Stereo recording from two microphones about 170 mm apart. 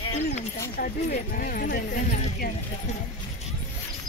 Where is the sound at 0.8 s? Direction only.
60° left (ahead or behind).